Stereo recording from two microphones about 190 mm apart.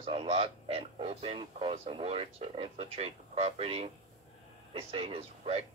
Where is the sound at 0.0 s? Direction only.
30° right (ahead or behind).